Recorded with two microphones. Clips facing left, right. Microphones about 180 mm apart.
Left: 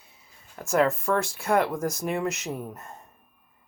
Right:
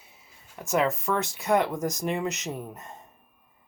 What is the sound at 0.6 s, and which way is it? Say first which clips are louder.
Speech: left 2 dB; centre (ahead or behind).